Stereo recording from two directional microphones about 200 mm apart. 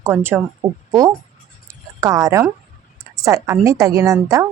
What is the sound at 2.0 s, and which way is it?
A woman's voice, 15° right (ahead or behind).